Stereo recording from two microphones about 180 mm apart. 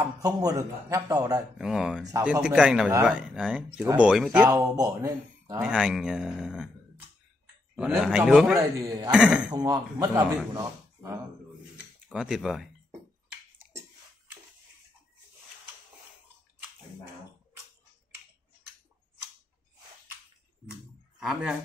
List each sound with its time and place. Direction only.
0.2 s a man's voice: 20° right (ahead or behind)
1.6 s speech: 5° right (ahead or behind)
4.5 s speech: 20° right (ahead or behind); by 6.7 s 5° right (ahead or behind)
7.7 s speech: 5° right (ahead or behind)
8.5 s a man's voice: 20° right (ahead or behind)
9.1 s speech: 5° right (ahead or behind)
9.5 s a man's voice: 20° right (ahead or behind)
12.1 s speech: centre (ahead or behind)
21.2 s speech: 5° right (ahead or behind)